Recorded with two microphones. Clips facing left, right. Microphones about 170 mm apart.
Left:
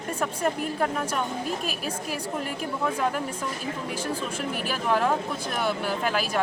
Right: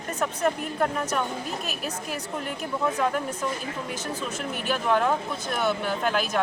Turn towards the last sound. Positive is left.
turn(degrees=5)  # may be behind; listen again after turning